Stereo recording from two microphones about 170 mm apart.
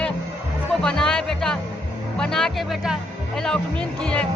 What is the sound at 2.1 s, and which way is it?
A man's voice, 5° left (ahead or behind).